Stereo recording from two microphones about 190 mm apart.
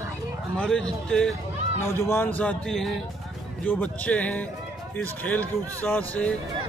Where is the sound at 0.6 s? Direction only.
5° left (ahead or behind).